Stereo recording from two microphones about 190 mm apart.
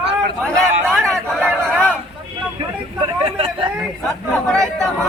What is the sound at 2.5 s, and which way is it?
Vehicle, 30° right (ahead or behind).